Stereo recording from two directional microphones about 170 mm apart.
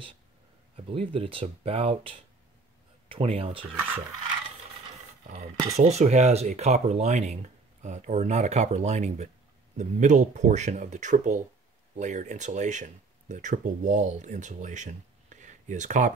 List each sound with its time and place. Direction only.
0.7 s speech: 30° right (ahead or behind)
5.8 s speech: 40° right (ahead or behind)